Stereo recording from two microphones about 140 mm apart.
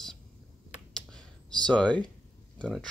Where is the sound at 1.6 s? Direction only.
10° left (ahead or behind).